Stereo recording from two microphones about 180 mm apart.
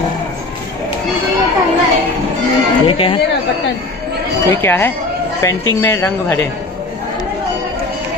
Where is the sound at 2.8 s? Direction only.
30° left (ahead or behind).